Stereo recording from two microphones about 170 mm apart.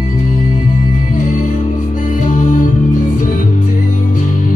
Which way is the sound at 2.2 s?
45° left (ahead or behind).